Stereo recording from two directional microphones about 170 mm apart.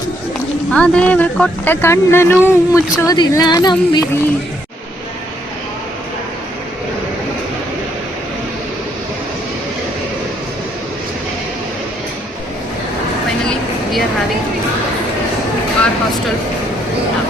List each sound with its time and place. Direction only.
0.7 s speech: 5° left (ahead or behind); by 4.2 s 25° left (ahead or behind)